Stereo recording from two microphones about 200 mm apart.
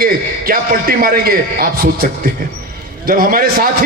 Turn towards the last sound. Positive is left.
turn(degrees=-45)  # may be behind; listen again after turning